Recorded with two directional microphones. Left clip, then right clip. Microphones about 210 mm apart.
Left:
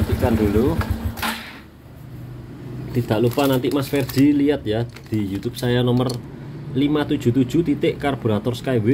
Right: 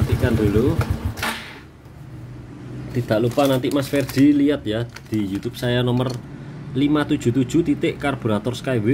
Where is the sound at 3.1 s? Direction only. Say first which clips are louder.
Right 1 dB; 5° right (ahead or behind).